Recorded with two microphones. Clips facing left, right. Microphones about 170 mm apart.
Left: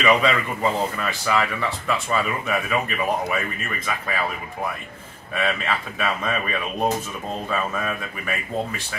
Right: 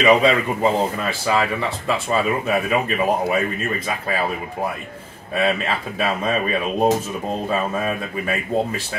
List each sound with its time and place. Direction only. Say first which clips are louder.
0.0 s speech: right 4 dB; 30° right (ahead or behind)